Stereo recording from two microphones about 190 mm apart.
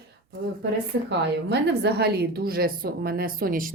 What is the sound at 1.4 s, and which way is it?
Speech, 60° right (ahead or behind).